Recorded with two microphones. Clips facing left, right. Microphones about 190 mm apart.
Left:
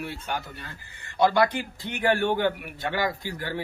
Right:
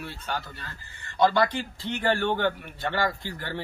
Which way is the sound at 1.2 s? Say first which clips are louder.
Left 1 dB; 15° left (ahead or behind).